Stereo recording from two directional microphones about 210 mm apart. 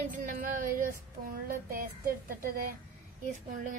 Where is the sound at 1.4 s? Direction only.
45° right (ahead or behind).